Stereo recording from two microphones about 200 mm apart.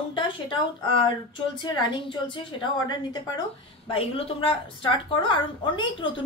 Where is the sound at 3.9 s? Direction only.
30° left (ahead or behind).